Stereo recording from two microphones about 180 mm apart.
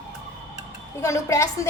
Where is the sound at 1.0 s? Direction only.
15° left (ahead or behind).